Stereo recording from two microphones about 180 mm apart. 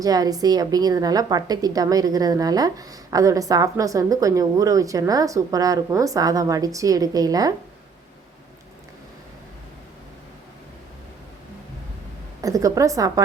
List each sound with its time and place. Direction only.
0.0 s a woman's voice: 20° right (ahead or behind)
12.4 s a woman's voice: 20° right (ahead or behind)